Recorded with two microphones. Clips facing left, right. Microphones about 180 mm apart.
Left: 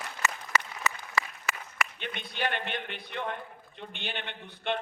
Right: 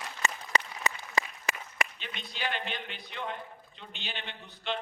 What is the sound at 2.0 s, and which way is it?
A man's voice, 60° left (ahead or behind).